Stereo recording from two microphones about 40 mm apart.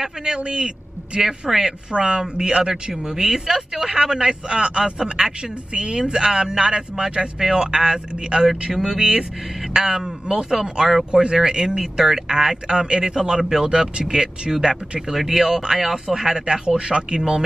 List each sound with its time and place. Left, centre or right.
0.2 s a man's voice: right
16.6 s a man's voice: right